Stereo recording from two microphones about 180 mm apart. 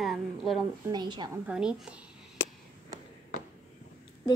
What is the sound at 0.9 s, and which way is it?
Speech, 25° right (ahead or behind).